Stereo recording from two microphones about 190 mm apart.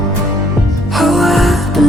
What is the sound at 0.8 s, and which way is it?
Music, centre (ahead or behind).